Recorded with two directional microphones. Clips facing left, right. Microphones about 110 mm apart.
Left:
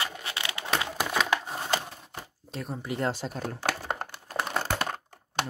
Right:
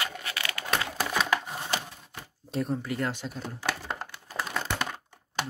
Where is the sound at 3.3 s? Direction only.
50° left (ahead or behind).